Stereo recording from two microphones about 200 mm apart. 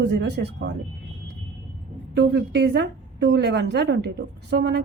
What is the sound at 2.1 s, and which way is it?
A woman's voice, 60° right (ahead or behind).